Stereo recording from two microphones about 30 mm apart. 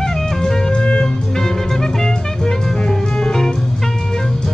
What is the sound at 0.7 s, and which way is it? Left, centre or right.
Music, left.